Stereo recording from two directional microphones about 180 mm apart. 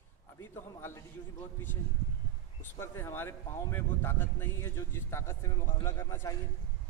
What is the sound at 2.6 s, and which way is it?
Speech, 15° left (ahead or behind).